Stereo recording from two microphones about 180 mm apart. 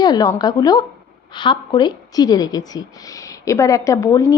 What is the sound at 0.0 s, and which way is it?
Speech, 20° left (ahead or behind).